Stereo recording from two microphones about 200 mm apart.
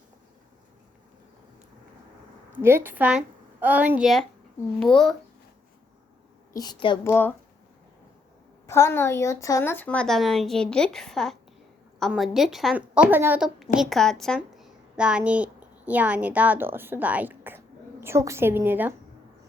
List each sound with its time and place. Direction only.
2.6 s a woman's voice: 10° right (ahead or behind)
6.5 s a woman's voice: 20° left (ahead or behind)
7.0 s speech: 10° left (ahead or behind)
8.6 s a woman's voice: 15° left (ahead or behind); by 18.9 s 10° right (ahead or behind)